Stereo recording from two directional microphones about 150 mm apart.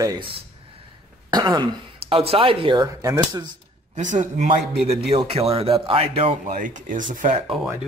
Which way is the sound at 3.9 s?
55° right (ahead or behind).